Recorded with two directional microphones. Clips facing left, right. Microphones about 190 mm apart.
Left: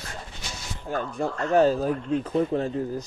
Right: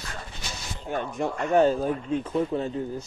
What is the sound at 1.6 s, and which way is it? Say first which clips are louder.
Speech: left 1 dB; 35° left (ahead or behind).